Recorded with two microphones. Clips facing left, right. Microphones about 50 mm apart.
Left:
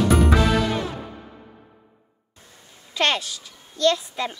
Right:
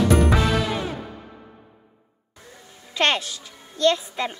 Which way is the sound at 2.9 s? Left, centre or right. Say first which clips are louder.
Right 1 dB; centre.